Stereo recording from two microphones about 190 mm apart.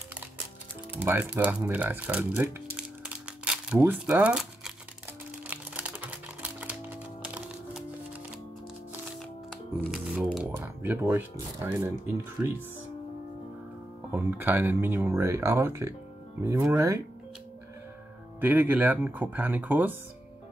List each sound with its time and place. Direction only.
0.9 s speech: 10° right (ahead or behind)
3.3 s crumpling: 5° right (ahead or behind)
5.5 s music: 10° right (ahead or behind)
9.8 s music: 5° right (ahead or behind)
10.5 s speech: 10° right (ahead or behind)
14.1 s speech: 10° right (ahead or behind)
18.4 s speech: 10° right (ahead or behind)